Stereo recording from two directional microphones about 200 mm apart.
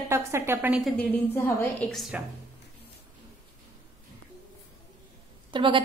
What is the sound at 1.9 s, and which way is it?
Speech, centre (ahead or behind).